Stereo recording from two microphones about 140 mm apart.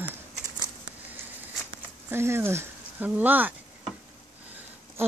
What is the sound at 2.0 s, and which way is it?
Speech, 15° right (ahead or behind).